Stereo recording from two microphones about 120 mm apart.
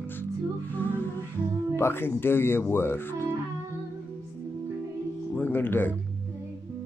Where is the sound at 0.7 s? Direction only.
15° left (ahead or behind).